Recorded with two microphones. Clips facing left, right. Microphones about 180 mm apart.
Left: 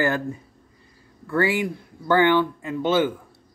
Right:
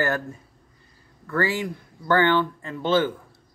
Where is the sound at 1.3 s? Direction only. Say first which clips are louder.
Left 3 dB; 10° left (ahead or behind).